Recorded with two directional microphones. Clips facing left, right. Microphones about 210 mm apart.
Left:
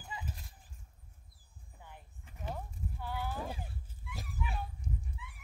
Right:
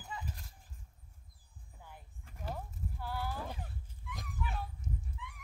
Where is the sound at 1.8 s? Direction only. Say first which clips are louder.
Even; centre (ahead or behind).